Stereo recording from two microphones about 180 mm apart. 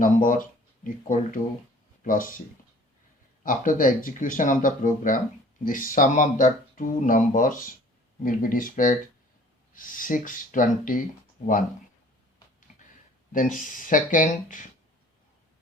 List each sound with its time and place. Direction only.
0.0 s speech: 50° left (ahead or behind)
3.4 s speech: 45° left (ahead or behind)
13.3 s speech: 50° left (ahead or behind)